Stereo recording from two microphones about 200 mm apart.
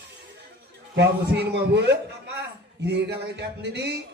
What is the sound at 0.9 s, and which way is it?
A man's voice, 60° right (ahead or behind).